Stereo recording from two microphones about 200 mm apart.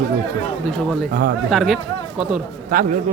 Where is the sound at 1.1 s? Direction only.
50° right (ahead or behind).